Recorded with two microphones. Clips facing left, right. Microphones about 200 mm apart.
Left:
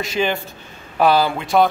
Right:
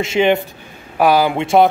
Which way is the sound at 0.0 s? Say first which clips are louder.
Right 6 dB; 25° right (ahead or behind).